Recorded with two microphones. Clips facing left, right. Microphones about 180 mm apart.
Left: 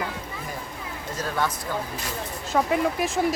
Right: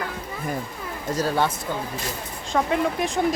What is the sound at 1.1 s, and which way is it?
Speech, 35° right (ahead or behind).